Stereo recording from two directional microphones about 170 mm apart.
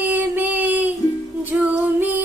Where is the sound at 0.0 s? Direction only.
10° right (ahead or behind).